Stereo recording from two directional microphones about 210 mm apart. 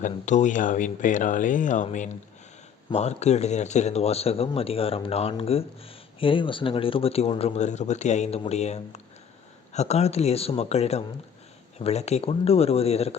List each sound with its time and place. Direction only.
0.0 s speech: 35° left (ahead or behind)